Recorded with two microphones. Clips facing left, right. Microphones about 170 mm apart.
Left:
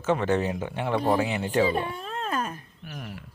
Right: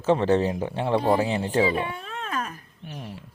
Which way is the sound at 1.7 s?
40° left (ahead or behind).